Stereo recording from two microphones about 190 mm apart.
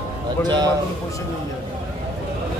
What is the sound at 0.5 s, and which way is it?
Speech, 20° right (ahead or behind).